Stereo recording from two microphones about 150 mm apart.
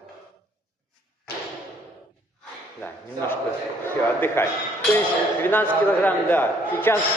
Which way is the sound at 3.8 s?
15° left (ahead or behind).